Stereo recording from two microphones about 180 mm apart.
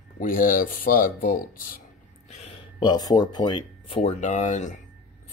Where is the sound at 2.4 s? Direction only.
30° left (ahead or behind).